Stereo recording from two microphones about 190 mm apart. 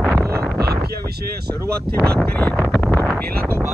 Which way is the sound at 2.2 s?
5° left (ahead or behind).